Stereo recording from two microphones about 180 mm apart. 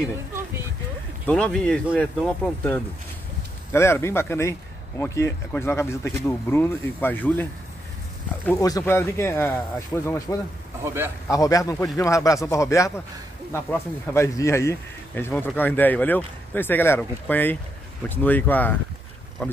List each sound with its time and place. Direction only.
1.2 s speech: 5° left (ahead or behind)
8.5 s speech: 20° left (ahead or behind)